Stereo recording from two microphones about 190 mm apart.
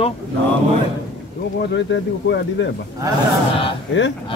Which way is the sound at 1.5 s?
65° left (ahead or behind).